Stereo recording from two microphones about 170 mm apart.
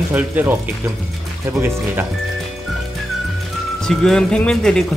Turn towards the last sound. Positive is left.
turn(degrees=5)  # may be behind; listen again after turning